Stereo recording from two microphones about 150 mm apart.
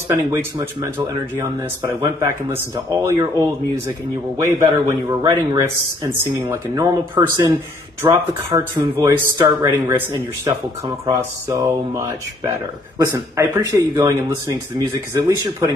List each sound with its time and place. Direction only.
0.1 s speech: 20° right (ahead or behind)
13.6 s speech: 25° right (ahead or behind)